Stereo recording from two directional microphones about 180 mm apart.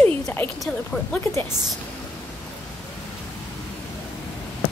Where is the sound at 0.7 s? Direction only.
Centre (ahead or behind).